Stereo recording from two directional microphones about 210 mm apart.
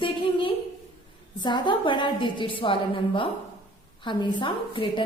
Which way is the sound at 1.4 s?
20° left (ahead or behind).